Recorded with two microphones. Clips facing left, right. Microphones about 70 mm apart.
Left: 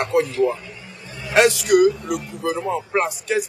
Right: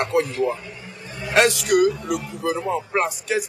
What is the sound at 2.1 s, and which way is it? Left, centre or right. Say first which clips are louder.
Speech: even; right.